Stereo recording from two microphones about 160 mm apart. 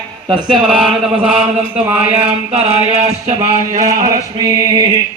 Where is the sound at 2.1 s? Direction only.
40° right (ahead or behind).